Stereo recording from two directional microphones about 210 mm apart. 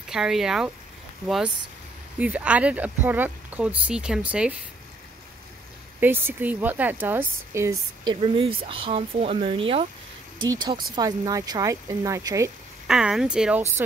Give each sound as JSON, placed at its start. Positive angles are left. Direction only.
{"t": 0.1, "sound": "speech", "side_deg": 0}
{"t": 5.9, "sound": "a woman's voice", "side_deg": -10}
{"t": 12.8, "sound": "speech", "side_deg": 0}